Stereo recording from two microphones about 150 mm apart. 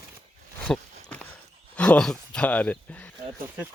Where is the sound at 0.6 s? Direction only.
10° left (ahead or behind).